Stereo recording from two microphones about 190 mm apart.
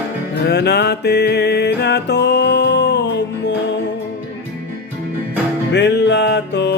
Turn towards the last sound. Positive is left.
turn(degrees=65)  # may be behind; listen again after turning